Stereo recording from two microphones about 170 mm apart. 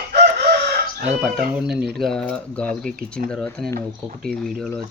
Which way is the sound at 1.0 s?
Centre (ahead or behind).